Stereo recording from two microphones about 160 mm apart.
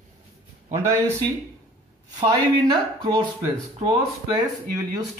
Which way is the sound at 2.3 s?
25° right (ahead or behind).